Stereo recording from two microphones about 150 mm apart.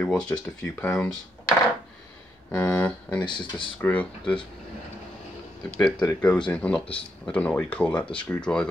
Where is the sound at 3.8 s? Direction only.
10° left (ahead or behind).